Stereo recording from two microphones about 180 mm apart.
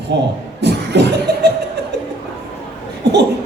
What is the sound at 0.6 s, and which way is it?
Beatboxing, 70° right (ahead or behind).